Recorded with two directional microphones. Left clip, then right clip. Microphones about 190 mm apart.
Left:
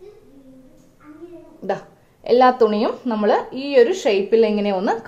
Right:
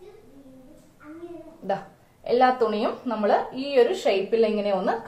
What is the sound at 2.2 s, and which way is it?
A woman's voice, 55° left (ahead or behind).